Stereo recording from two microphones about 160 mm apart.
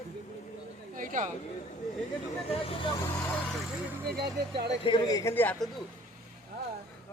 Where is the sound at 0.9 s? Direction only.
55° right (ahead or behind).